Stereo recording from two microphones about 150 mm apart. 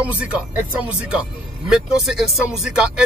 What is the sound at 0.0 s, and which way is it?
Speech, 10° right (ahead or behind).